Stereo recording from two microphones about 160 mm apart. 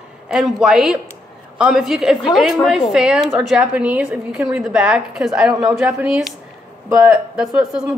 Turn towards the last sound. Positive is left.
turn(degrees=-5)  # may be behind; listen again after turning